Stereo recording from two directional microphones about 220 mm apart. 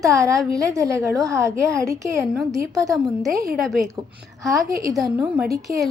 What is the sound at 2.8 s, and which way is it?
A woman's voice, centre (ahead or behind).